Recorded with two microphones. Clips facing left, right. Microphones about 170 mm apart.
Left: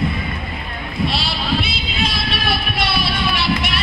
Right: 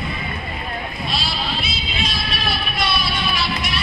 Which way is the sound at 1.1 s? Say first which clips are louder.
Left 1 dB; 65° left (ahead or behind).